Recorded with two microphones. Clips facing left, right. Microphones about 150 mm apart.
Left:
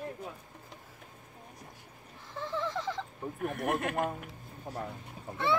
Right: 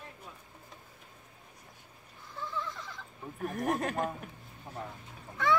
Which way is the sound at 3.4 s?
35° right (ahead or behind).